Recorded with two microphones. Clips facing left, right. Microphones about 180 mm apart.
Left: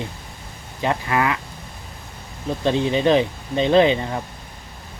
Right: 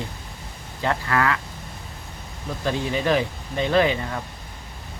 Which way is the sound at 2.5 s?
25° left (ahead or behind).